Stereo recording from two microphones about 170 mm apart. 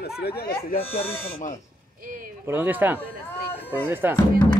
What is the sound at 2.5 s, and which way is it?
Speech, 10° right (ahead or behind).